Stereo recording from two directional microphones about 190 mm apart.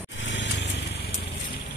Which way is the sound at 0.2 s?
75° left (ahead or behind).